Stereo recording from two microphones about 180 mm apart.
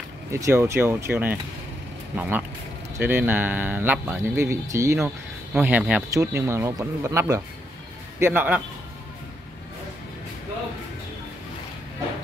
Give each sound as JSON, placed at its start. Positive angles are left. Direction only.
{"t": 0.3, "sound": "speech", "side_deg": -15}